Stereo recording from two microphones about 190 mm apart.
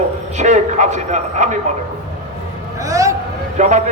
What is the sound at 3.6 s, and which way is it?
Speech, 40° right (ahead or behind).